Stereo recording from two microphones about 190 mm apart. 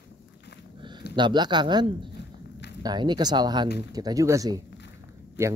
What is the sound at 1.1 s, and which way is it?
Speech, 25° right (ahead or behind).